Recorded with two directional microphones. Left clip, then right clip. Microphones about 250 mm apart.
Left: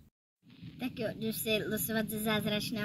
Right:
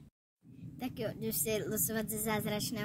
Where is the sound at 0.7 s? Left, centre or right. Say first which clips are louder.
Left 2 dB; centre.